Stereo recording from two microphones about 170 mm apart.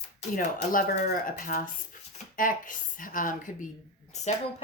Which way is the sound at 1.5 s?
50° left (ahead or behind).